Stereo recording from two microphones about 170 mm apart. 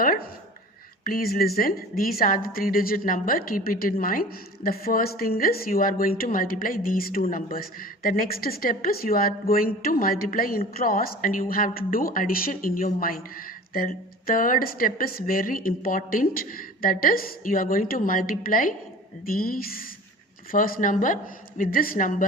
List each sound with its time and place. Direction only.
1.0 s a woman's voice: 60° left (ahead or behind)